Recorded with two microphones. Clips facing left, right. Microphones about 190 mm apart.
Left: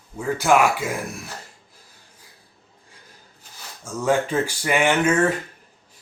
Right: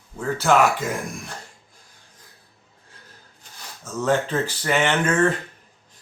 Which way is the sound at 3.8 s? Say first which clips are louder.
Left 1 dB; 10° left (ahead or behind).